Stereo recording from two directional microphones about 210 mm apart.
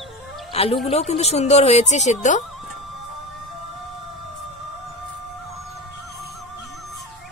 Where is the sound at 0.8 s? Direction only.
30° left (ahead or behind).